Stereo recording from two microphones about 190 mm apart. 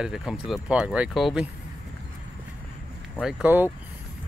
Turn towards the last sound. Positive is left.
turn(degrees=-5)  # may be behind; listen again after turning